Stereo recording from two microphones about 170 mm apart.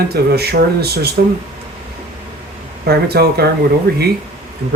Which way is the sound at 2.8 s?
70° right (ahead or behind).